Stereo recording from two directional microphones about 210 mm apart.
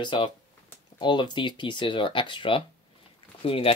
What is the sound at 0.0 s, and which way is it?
Speech, 25° left (ahead or behind).